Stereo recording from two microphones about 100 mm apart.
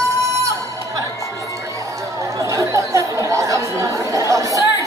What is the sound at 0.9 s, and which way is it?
Music, 30° right (ahead or behind).